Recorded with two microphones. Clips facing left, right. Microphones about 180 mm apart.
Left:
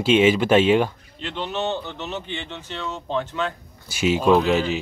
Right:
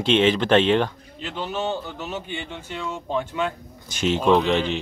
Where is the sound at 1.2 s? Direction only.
5° right (ahead or behind).